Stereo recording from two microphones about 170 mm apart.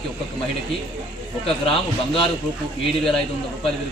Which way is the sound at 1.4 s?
30° left (ahead or behind).